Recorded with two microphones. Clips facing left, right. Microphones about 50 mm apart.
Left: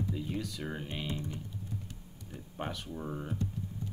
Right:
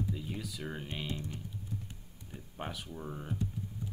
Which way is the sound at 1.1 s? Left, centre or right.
Centre.